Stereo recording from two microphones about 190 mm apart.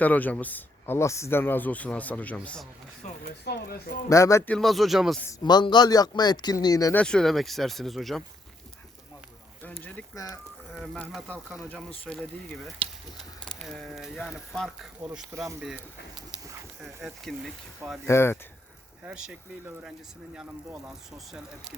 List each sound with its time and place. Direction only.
0.0 s speech: 10° left (ahead or behind)
3.2 s speech: 55° left (ahead or behind)
4.1 s speech: 15° left (ahead or behind)
4.5 s speech: centre (ahead or behind)
5.2 s speech: 20° left (ahead or behind)
7.0 s speech: 5° left (ahead or behind)
9.8 s speech: 15° left (ahead or behind)
15.3 s speech: 15° right (ahead or behind)
17.2 s speech: centre (ahead or behind)
18.0 s speech: 15° left (ahead or behind)
19.0 s speech: 5° right (ahead or behind)